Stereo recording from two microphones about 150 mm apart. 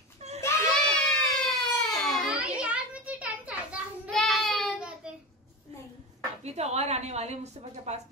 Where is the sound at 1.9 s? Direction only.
5° right (ahead or behind).